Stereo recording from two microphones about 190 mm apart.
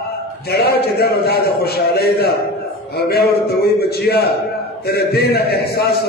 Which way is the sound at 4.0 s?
55° left (ahead or behind).